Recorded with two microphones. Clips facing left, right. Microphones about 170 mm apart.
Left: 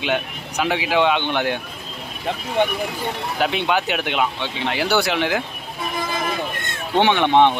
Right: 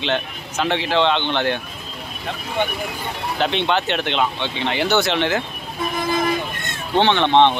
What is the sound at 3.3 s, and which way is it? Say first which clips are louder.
Speech: right 1 dB; 5° left (ahead or behind).